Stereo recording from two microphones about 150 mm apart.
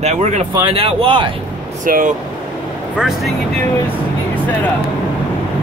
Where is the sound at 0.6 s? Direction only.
35° right (ahead or behind).